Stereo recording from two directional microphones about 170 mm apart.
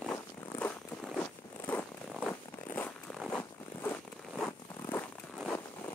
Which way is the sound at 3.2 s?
10° left (ahead or behind).